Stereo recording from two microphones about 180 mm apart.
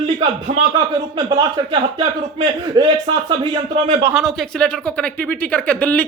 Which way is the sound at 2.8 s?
20° right (ahead or behind).